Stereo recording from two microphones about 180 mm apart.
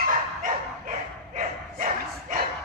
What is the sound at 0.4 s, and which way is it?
Bow-wow, 45° right (ahead or behind).